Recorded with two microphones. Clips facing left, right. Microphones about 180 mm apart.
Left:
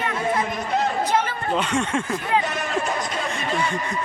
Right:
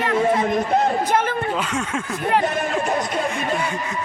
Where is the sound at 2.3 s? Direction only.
55° right (ahead or behind).